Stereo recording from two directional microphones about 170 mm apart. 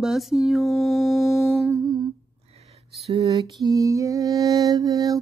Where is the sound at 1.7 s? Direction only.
25° right (ahead or behind).